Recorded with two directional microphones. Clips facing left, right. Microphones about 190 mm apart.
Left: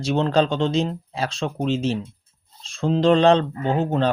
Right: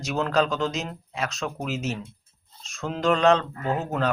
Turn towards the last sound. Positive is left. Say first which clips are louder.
# left 5 dB
turn(degrees=30)  # may be behind; listen again after turning